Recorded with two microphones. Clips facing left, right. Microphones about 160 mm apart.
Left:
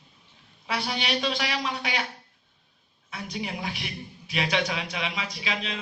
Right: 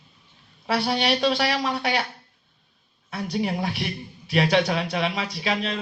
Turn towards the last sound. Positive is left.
turn(degrees=-50)  # may be behind; listen again after turning